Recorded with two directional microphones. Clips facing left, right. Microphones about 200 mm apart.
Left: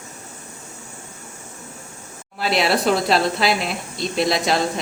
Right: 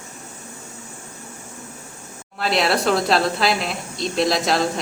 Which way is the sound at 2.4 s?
Centre (ahead or behind).